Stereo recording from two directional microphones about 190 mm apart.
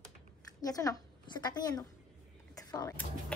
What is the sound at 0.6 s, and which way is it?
Speech, 20° left (ahead or behind).